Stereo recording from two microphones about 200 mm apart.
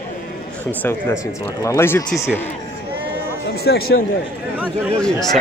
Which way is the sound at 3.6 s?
55° left (ahead or behind).